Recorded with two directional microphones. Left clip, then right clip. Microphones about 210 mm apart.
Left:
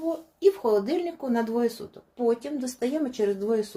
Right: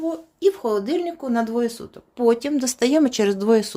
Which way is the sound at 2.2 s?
45° right (ahead or behind).